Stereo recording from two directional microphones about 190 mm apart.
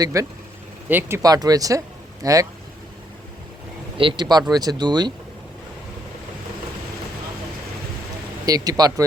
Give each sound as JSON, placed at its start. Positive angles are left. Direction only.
{"t": 0.0, "sound": "speech", "side_deg": -15}
{"t": 3.9, "sound": "speech", "side_deg": -25}
{"t": 8.4, "sound": "speech", "side_deg": -20}